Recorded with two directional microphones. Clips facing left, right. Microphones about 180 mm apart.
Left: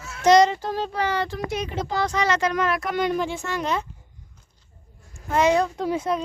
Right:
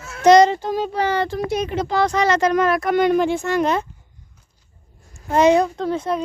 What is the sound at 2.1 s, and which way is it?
Speech, 45° right (ahead or behind).